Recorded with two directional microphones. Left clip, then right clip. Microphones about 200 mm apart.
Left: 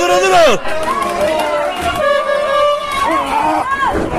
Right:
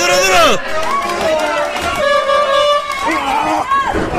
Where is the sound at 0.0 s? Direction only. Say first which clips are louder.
Left 1 dB; 30° left (ahead or behind).